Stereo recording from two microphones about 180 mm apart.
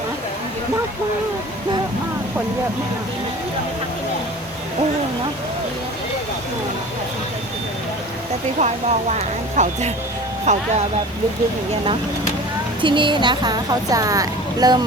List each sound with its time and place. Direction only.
8.5 s speech: 40° right (ahead or behind)
12.8 s a woman's voice: 25° right (ahead or behind)